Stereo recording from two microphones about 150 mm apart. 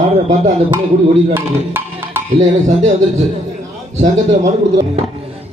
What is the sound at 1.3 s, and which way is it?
Speech, 15° right (ahead or behind).